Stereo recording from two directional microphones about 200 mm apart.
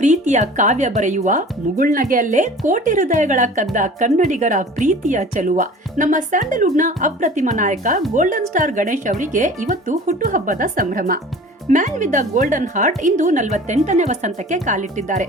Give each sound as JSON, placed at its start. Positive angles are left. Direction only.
{"t": 0.0, "sound": "speech", "side_deg": -35}